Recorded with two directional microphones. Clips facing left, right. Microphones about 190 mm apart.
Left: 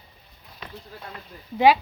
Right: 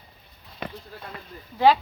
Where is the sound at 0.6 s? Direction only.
60° right (ahead or behind).